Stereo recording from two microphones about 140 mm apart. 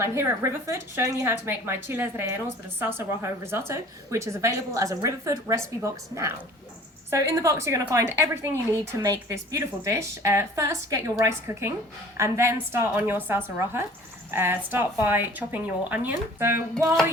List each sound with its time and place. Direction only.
0.0 s a woman's voice: 20° right (ahead or behind)